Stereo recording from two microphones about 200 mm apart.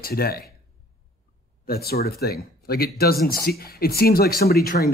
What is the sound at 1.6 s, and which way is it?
Speech, 50° left (ahead or behind).